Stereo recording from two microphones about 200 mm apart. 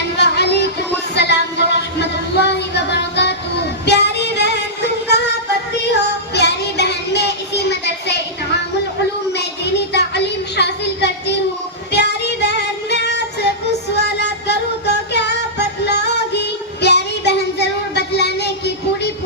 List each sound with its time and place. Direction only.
0.2 s a sound: 55° left (ahead or behind)
3.8 s singing: 55° left (ahead or behind)
5.0 s music: 55° left (ahead or behind)
6.3 s child singing: 55° left (ahead or behind)
9.3 s a sound: 60° left (ahead or behind)
11.9 s child singing: 60° left (ahead or behind)